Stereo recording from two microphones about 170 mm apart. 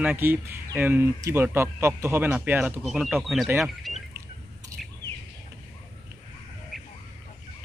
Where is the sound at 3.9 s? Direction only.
Centre (ahead or behind).